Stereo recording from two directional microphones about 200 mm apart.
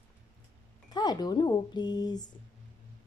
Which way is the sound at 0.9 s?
20° left (ahead or behind).